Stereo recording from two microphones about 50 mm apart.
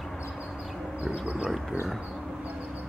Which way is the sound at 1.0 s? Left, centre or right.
Right.